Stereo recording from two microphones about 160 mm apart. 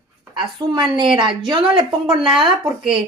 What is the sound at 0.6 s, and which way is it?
A woman's voice, 30° right (ahead or behind).